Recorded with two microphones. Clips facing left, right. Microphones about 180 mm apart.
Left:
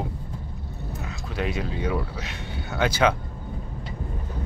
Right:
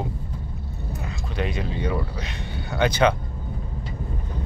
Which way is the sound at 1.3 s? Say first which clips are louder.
Even; 5° left (ahead or behind).